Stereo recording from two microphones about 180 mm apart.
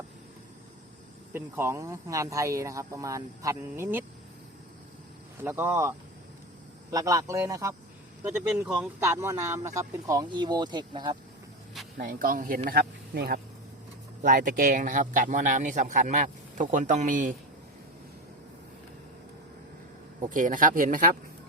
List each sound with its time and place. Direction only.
1.3 s speech: 15° right (ahead or behind)
5.4 s speech: 15° right (ahead or behind)
6.9 s speech: 20° right (ahead or behind)
8.3 s speech: 5° right (ahead or behind)
9.0 s speech: 15° right (ahead or behind)
11.9 s a man's voice: 50° right (ahead or behind)
14.2 s a man's voice: 45° right (ahead or behind)
20.3 s a man's voice: 45° right (ahead or behind)